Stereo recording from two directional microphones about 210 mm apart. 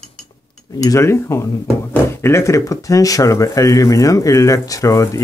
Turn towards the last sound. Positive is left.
turn(degrees=15)  # may be behind; listen again after turning